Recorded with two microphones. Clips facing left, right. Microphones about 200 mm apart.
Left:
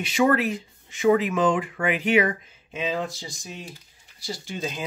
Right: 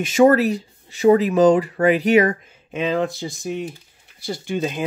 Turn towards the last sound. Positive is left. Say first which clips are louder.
# right 8 dB
turn(degrees=-60)  # may be behind; listen again after turning